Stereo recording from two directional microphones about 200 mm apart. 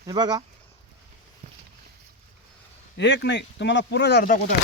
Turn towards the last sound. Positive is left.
turn(degrees=50)  # may be behind; listen again after turning